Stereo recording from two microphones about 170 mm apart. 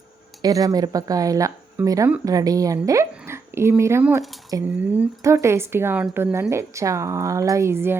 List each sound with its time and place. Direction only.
0.4 s speech: 20° right (ahead or behind)